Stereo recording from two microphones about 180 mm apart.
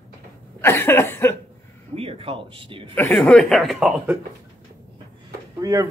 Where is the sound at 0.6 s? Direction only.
10° left (ahead or behind).